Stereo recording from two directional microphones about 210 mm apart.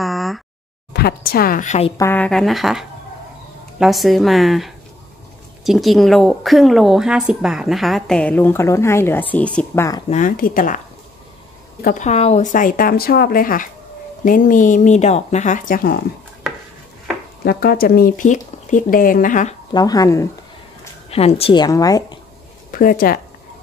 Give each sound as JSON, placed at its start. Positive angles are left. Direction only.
{"t": 0.0, "sound": "a sound", "side_deg": 0}
{"t": 0.9, "sound": "a woman's voice", "side_deg": 45}
{"t": 2.0, "sound": "a woman's voice", "side_deg": 10}
{"t": 10.0, "sound": "speech", "side_deg": 35}
{"t": 11.8, "sound": "speech", "side_deg": 35}
{"t": 17.5, "sound": "speech", "side_deg": 45}
{"t": 19.7, "sound": "speech", "side_deg": 20}
{"t": 21.1, "sound": "a woman's voice", "side_deg": 30}
{"t": 22.7, "sound": "speech", "side_deg": 40}